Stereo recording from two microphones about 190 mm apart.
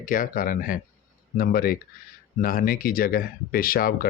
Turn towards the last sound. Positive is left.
turn(degrees=50)  # may be behind; listen again after turning